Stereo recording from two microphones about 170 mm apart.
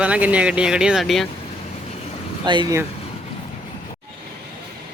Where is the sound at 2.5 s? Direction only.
25° right (ahead or behind).